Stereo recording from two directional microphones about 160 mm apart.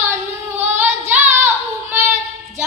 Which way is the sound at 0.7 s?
10° right (ahead or behind).